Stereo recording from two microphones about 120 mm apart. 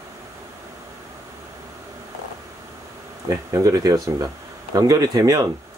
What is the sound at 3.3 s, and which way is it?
Speech, 25° right (ahead or behind).